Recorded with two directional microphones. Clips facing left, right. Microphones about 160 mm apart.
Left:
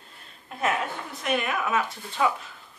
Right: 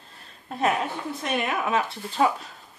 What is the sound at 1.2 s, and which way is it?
Speech, 30° right (ahead or behind).